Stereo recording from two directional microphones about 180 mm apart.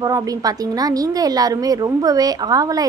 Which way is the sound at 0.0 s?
20° right (ahead or behind).